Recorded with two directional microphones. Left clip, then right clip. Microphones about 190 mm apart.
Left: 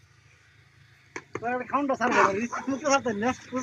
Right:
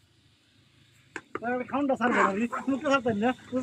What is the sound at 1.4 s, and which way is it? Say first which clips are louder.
Speech: left 2 dB; 25° right (ahead or behind).